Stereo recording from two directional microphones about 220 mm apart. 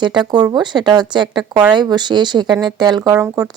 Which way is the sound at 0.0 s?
20° right (ahead or behind).